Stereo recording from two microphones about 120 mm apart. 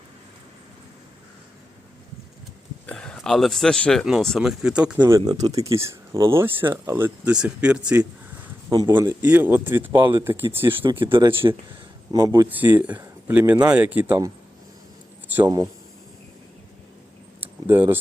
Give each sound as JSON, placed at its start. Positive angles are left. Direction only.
{"t": 2.8, "sound": "speech", "side_deg": 10}
{"t": 5.0, "sound": "speech", "side_deg": -30}
{"t": 9.9, "sound": "speech", "side_deg": -40}
{"t": 10.2, "sound": "speech", "side_deg": -20}
{"t": 11.0, "sound": "speech", "side_deg": -40}
{"t": 12.1, "sound": "speech", "side_deg": -30}
{"t": 12.5, "sound": "speech", "side_deg": -15}
{"t": 15.4, "sound": "speech", "side_deg": -35}
{"t": 17.4, "sound": "a sound", "side_deg": -20}